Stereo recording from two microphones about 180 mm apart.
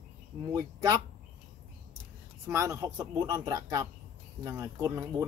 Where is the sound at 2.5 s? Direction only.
15° right (ahead or behind).